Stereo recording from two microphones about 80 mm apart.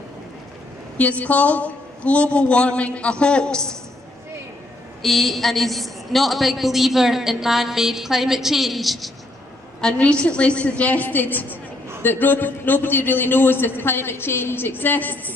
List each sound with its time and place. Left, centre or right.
0.9 s a man's voice: centre
5.0 s a woman's voice: centre
9.8 s a man's voice: centre